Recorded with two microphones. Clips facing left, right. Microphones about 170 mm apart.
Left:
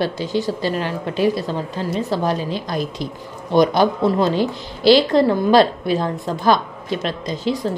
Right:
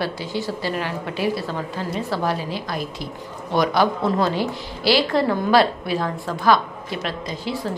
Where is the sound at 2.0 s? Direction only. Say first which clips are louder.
Left 3 dB; 20° left (ahead or behind).